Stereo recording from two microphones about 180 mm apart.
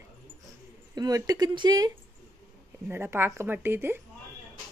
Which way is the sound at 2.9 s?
15° right (ahead or behind).